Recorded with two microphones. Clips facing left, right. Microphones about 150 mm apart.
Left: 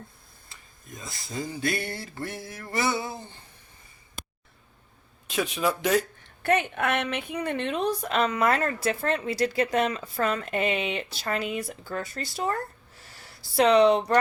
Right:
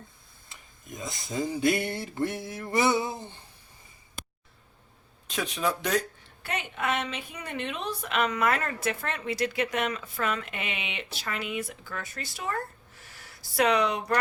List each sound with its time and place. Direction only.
0.4 s speech: 20° right (ahead or behind)
5.3 s speech: 5° left (ahead or behind)
6.4 s a woman's voice: 55° left (ahead or behind); by 12.5 s 35° left (ahead or behind)
13.6 s speech: 30° left (ahead or behind)